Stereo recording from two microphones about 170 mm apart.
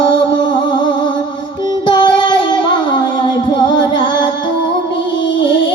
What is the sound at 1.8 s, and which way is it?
Music, 25° left (ahead or behind).